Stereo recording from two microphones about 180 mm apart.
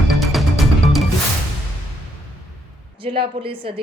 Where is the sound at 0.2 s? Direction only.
Centre (ahead or behind).